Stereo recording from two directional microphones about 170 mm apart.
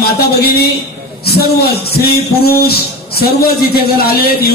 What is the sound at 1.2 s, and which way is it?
A man's voice, 70° left (ahead or behind).